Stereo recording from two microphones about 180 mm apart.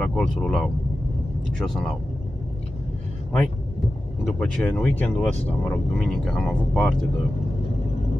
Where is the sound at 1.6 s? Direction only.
Centre (ahead or behind).